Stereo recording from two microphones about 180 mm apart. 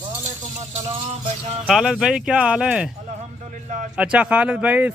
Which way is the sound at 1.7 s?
5° right (ahead or behind).